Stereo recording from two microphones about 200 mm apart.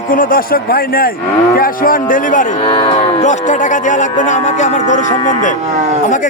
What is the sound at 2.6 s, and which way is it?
Speech, 25° left (ahead or behind).